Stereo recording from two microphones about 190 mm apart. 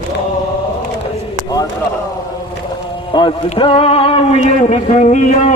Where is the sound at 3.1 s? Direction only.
25° left (ahead or behind).